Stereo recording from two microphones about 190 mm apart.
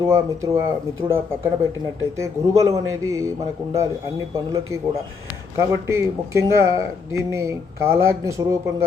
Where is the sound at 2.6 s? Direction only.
15° right (ahead or behind).